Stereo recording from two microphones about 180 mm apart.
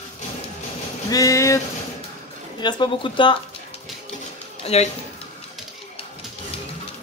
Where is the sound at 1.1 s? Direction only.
20° left (ahead or behind).